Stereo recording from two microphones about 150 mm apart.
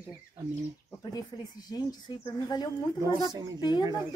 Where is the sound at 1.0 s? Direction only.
25° left (ahead or behind).